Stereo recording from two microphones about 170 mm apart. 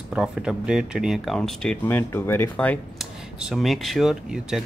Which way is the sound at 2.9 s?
Centre (ahead or behind).